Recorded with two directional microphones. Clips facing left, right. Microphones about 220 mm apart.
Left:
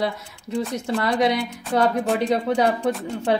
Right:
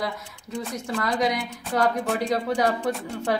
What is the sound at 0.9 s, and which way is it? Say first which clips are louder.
A woman's voice: left 4 dB; 30° left (ahead or behind).